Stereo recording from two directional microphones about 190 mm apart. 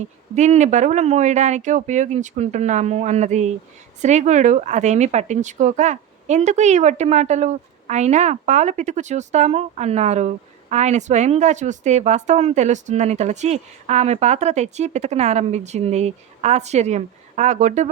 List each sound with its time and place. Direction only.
0.3 s speech: 35° right (ahead or behind)